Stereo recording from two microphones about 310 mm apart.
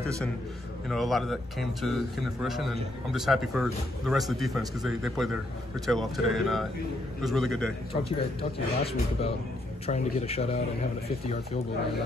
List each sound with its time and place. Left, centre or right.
0.8 s a man's voice: centre
7.9 s a man's voice: centre